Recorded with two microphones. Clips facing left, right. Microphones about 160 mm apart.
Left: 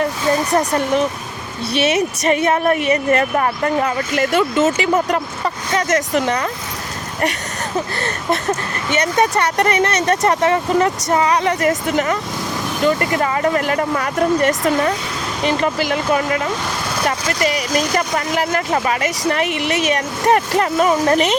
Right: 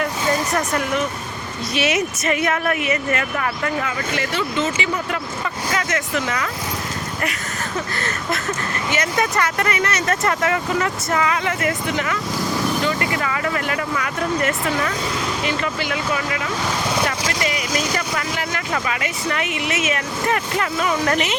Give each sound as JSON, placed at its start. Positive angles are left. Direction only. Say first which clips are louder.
{"t": 0.5, "sound": "a woman's voice", "louder": "left 5 dB", "side_deg": 35}
{"t": 8.0, "sound": "a woman's voice", "louder": "left 5 dB", "side_deg": 30}